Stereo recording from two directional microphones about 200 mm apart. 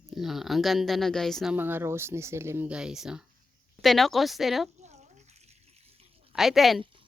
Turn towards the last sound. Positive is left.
turn(degrees=0)  # may be behind; listen again after turning